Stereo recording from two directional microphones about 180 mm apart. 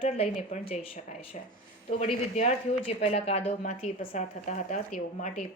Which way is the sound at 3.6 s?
45° left (ahead or behind).